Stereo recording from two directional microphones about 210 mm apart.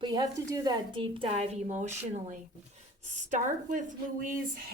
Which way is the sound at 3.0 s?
35° right (ahead or behind).